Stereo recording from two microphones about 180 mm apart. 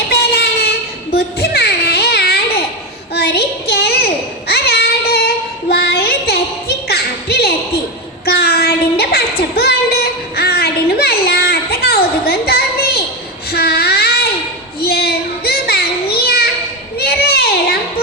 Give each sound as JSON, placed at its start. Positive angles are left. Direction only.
{"t": 0.1, "sound": "train", "side_deg": 60}
{"t": 1.1, "sound": "music", "side_deg": 60}
{"t": 3.2, "sound": "a sound", "side_deg": 60}
{"t": 8.2, "sound": "child singing", "side_deg": 60}
{"t": 14.8, "sound": "children playing", "side_deg": 60}
{"t": 17.0, "sound": "a sound", "side_deg": 60}